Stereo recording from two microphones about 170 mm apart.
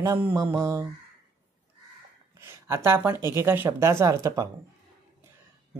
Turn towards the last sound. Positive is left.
turn(degrees=-20)  # may be behind; listen again after turning